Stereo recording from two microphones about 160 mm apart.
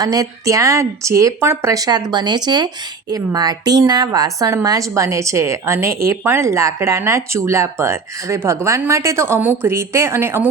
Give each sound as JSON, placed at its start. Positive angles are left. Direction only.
{"t": 0.0, "sound": "a woman's voice", "side_deg": -20}